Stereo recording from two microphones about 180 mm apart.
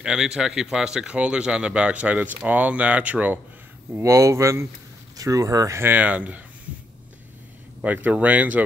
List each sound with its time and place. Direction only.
0.0 s speech: 5° right (ahead or behind)
7.8 s speech: 10° right (ahead or behind)